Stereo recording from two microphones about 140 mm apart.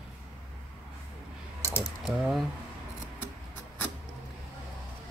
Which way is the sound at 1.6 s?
20° left (ahead or behind).